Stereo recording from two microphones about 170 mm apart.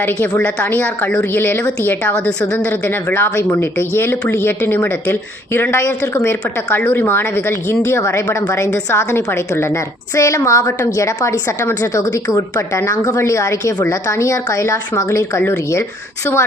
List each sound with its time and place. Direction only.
0.0 s a woman's voice: 10° left (ahead or behind)